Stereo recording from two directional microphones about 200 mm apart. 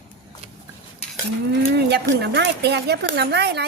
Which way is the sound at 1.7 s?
55° right (ahead or behind).